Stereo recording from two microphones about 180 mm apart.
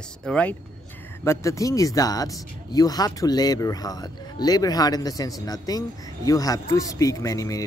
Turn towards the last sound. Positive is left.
turn(degrees=20)  # may be behind; listen again after turning